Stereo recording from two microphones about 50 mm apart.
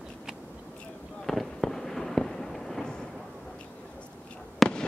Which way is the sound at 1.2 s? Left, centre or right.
Centre.